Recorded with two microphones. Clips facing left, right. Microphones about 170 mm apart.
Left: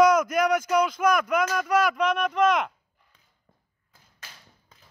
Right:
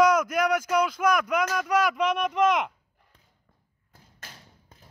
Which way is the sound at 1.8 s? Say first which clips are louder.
Left 1 dB; 20° right (ahead or behind).